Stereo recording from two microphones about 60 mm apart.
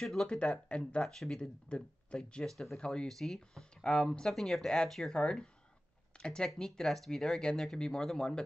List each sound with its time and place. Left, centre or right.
0.0 s speech: centre
0.3 s speech: centre
1.0 s speech: centre
2.5 s speech: centre
2.8 s speech: centre